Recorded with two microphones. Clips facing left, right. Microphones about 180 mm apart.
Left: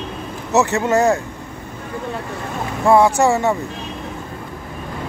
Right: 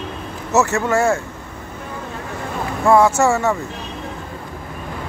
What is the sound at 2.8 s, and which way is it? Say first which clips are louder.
Speech: left 1 dB; 15° left (ahead or behind).